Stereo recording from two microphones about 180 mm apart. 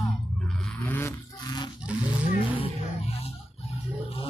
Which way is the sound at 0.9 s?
10° left (ahead or behind).